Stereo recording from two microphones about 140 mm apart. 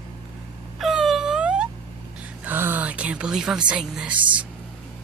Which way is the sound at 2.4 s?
15° right (ahead or behind).